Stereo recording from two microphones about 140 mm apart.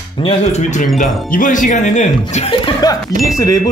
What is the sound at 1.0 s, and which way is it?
Speech, 70° left (ahead or behind).